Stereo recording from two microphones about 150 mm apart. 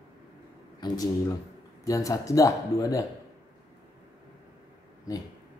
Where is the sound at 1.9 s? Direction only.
20° left (ahead or behind).